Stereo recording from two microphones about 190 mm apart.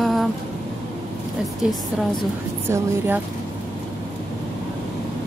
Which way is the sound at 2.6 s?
15° right (ahead or behind).